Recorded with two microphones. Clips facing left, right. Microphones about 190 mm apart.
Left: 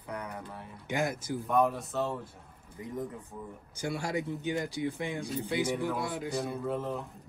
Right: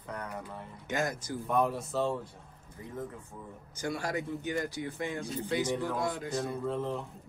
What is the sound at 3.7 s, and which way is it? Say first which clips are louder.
A man's voice: left 1 dB; 15° left (ahead or behind).